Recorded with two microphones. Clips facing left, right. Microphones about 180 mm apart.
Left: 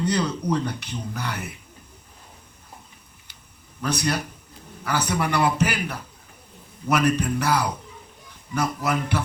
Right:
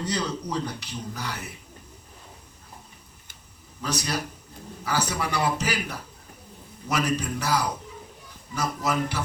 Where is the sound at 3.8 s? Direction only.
60° left (ahead or behind).